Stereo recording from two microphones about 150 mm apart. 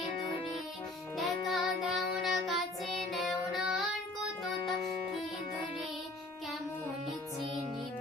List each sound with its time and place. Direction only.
1.1 s music: centre (ahead or behind)